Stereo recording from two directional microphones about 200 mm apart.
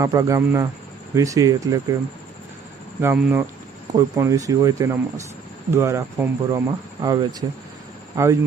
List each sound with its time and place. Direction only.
0.0 s speech: 15° right (ahead or behind)
3.0 s speech: 10° right (ahead or behind)